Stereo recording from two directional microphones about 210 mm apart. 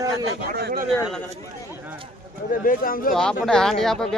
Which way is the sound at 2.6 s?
40° left (ahead or behind).